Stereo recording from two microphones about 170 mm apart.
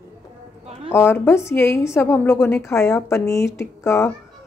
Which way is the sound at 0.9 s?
15° left (ahead or behind).